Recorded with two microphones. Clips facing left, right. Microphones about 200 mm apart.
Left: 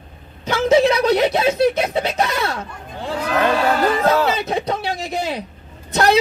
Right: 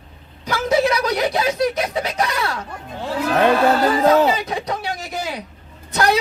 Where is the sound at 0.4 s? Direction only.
25° left (ahead or behind).